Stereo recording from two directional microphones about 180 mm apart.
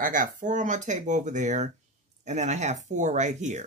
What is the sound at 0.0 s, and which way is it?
Speech, 50° right (ahead or behind).